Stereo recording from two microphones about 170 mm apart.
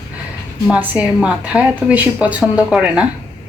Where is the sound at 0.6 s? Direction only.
10° right (ahead or behind).